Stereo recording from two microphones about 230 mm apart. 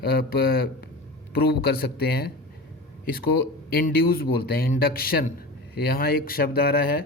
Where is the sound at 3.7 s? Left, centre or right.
Left.